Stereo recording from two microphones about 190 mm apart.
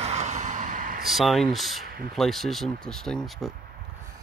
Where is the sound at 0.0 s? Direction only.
35° right (ahead or behind).